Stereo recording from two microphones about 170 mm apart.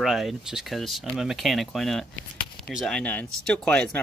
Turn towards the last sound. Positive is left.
turn(degrees=5)  # may be behind; listen again after turning